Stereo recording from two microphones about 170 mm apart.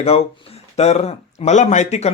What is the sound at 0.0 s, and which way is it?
A man's voice, 35° left (ahead or behind).